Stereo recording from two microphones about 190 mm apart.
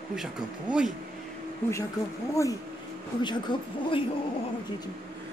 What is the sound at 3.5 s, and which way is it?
Speech, 25° left (ahead or behind).